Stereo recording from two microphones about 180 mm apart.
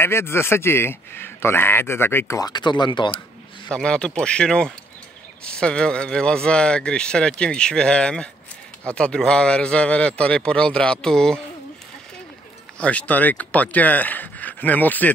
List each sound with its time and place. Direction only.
0.0 s a man's voice: 15° left (ahead or behind)
3.7 s speech: 5° left (ahead or behind)
12.7 s a man's voice: 5° left (ahead or behind)